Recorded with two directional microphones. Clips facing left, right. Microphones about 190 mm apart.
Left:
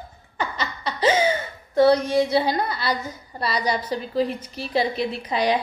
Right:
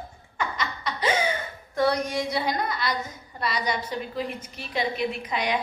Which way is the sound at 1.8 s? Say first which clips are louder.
Left 7 dB; 30° left (ahead or behind).